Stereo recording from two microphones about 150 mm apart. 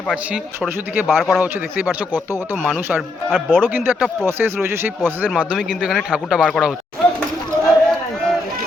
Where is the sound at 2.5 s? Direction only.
Centre (ahead or behind).